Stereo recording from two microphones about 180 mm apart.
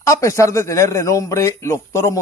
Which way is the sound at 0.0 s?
15° left (ahead or behind).